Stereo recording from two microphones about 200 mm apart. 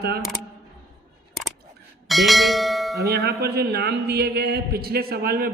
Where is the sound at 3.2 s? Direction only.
55° right (ahead or behind).